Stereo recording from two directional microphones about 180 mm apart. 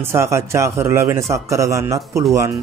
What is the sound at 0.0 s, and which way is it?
A man's voice, 15° right (ahead or behind).